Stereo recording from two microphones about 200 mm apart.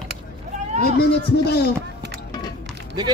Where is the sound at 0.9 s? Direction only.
55° left (ahead or behind).